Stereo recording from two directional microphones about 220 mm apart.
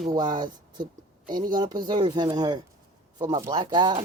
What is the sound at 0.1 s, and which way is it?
Speech, 20° right (ahead or behind).